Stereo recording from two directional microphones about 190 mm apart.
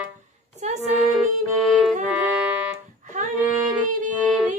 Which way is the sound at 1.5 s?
Centre (ahead or behind).